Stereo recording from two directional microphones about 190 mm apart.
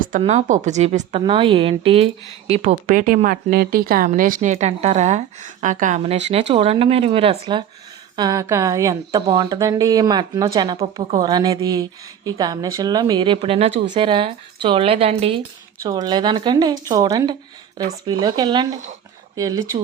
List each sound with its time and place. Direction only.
0.2 s speech: 35° right (ahead or behind)
2.8 s speech: 45° right (ahead or behind); by 7.6 s 30° right (ahead or behind)
8.1 s a woman's voice: 20° right (ahead or behind)
15.8 s a woman's voice: 20° right (ahead or behind)